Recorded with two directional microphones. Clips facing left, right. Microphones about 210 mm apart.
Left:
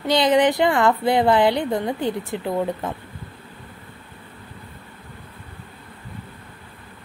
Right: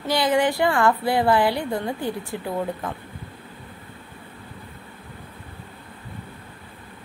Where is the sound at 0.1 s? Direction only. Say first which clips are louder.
Left 4 dB; 20° left (ahead or behind).